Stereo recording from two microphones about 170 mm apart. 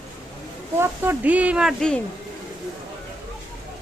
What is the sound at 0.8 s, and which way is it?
Speech, 10° right (ahead or behind).